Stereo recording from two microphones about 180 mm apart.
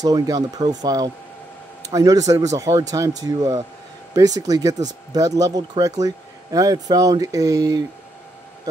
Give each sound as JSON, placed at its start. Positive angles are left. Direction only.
{"t": 0.0, "sound": "speech", "side_deg": -20}